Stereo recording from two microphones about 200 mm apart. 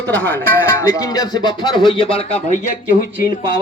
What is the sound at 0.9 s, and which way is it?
Speech, 20° left (ahead or behind).